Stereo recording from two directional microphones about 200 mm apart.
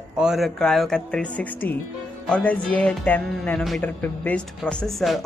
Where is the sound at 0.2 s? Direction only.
Centre (ahead or behind).